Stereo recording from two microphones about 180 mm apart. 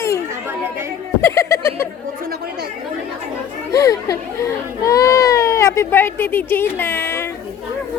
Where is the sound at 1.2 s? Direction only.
15° left (ahead or behind).